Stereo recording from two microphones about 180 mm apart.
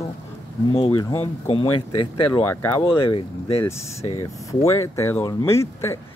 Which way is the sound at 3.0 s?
30° left (ahead or behind).